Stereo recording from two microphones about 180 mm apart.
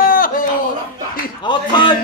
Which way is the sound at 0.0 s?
50° left (ahead or behind).